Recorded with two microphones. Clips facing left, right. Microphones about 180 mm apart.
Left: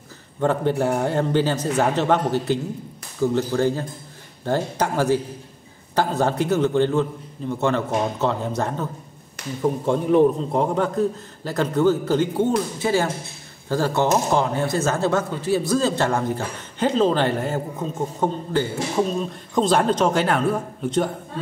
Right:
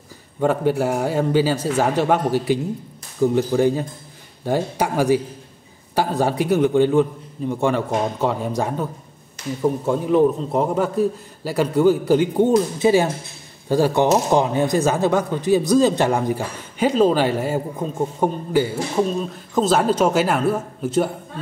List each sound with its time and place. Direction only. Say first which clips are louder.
0.4 s a man's voice: right 2 dB; 10° right (ahead or behind)